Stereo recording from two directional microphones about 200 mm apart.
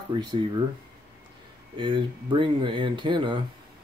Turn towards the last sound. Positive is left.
turn(degrees=-25)  # may be behind; listen again after turning